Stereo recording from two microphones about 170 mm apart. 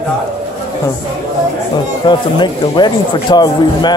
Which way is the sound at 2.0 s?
25° left (ahead or behind).